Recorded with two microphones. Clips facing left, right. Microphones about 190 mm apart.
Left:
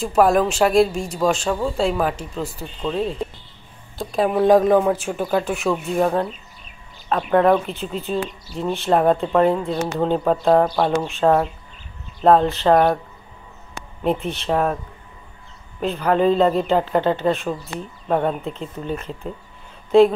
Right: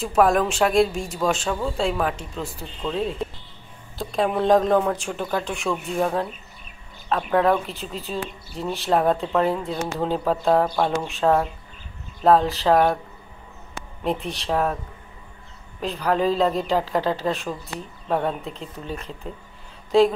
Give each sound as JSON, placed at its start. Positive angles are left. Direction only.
{"t": 0.0, "sound": "speech", "side_deg": 0}
{"t": 4.0, "sound": "speech", "side_deg": 0}
{"t": 14.0, "sound": "speech", "side_deg": 0}
{"t": 15.8, "sound": "speech", "side_deg": 0}